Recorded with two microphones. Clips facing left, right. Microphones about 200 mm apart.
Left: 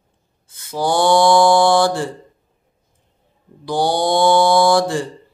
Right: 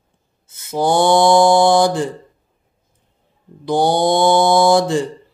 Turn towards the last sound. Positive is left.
turn(degrees=-20)  # may be behind; listen again after turning